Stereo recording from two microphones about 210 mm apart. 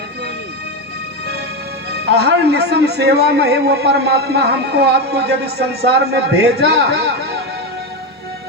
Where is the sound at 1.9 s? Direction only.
50° right (ahead or behind).